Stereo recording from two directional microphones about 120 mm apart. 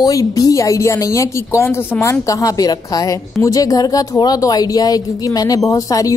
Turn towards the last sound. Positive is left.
turn(degrees=30)  # may be behind; listen again after turning